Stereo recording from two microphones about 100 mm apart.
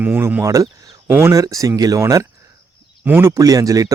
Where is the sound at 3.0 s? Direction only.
25° right (ahead or behind).